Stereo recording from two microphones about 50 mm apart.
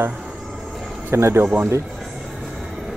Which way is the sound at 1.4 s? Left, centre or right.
Right.